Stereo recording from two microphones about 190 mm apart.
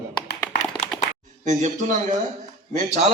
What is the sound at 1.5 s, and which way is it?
Speech, 40° right (ahead or behind).